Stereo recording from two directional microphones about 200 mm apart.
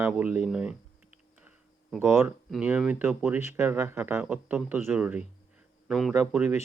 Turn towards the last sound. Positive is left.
turn(degrees=-10)  # may be behind; listen again after turning